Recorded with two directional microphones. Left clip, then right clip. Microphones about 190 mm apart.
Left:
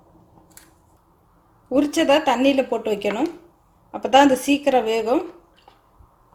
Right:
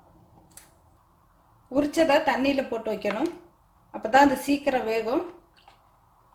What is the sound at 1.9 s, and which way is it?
A woman's voice, 30° left (ahead or behind).